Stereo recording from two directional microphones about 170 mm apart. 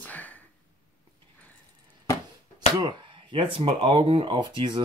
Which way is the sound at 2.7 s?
30° right (ahead or behind).